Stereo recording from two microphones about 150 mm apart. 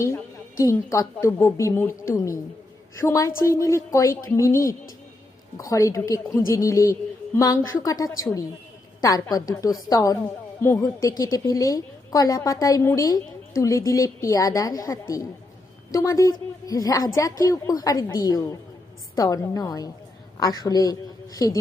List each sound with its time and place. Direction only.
0.6 s a woman's voice: 20° left (ahead or behind)
5.7 s a woman's voice: 20° left (ahead or behind)